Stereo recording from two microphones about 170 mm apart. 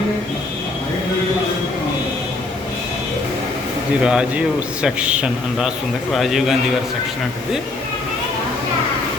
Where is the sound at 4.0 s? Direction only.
5° right (ahead or behind).